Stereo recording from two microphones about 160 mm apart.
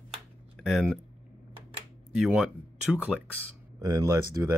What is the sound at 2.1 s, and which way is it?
Speech, 5° right (ahead or behind).